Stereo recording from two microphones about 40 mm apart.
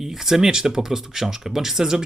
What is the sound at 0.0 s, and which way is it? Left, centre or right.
A man's voice, centre.